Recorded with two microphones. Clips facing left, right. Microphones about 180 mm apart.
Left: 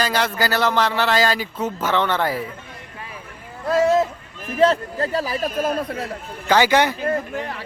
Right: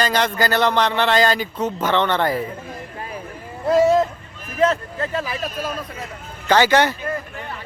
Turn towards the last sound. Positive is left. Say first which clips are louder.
# left 5 dB
turn(degrees=75)  # may be behind; listen again after turning